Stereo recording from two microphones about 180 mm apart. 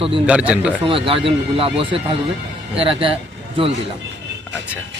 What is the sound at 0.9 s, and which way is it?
Speech, 30° right (ahead or behind).